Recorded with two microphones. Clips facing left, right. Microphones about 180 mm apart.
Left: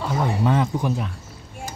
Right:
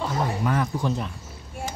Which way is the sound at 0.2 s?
20° left (ahead or behind).